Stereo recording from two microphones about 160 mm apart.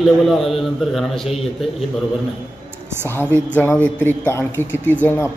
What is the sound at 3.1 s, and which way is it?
Speech, 15° left (ahead or behind).